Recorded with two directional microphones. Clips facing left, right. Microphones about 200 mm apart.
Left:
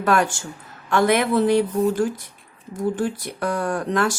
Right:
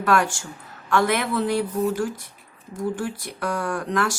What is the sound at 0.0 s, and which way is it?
A woman's voice, 20° left (ahead or behind).